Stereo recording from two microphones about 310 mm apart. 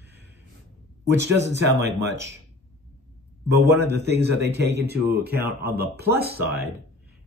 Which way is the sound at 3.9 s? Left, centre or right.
Right.